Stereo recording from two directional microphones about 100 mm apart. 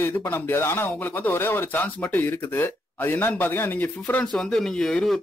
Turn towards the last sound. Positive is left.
turn(degrees=5)  # may be behind; listen again after turning